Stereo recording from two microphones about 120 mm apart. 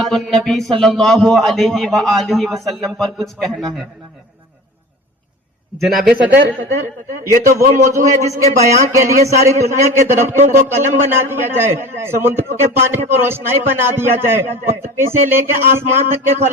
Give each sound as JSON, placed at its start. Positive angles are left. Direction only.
{"t": 0.0, "sound": "speech", "side_deg": 5}
{"t": 5.8, "sound": "speech", "side_deg": -5}
{"t": 7.6, "sound": "a man's voice", "side_deg": -25}